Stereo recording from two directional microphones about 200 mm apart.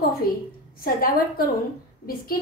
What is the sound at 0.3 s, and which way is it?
A woman's voice, 50° left (ahead or behind).